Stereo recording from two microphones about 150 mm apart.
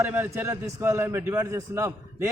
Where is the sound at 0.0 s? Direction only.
15° right (ahead or behind).